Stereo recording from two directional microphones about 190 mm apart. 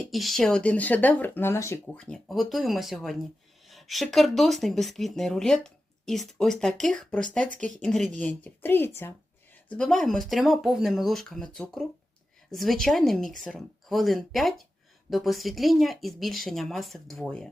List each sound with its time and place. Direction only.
0.1 s a woman's voice: centre (ahead or behind)